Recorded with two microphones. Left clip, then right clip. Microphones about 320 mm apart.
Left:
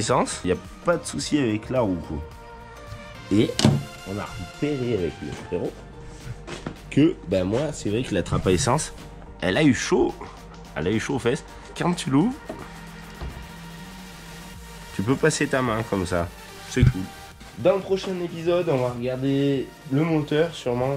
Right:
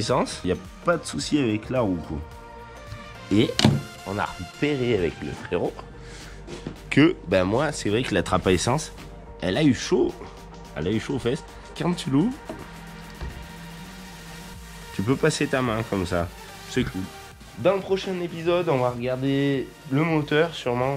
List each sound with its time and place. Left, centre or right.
0.0 s speech: centre
3.3 s speech: centre
4.6 s speech: centre
7.2 s speech: centre
15.0 s speech: centre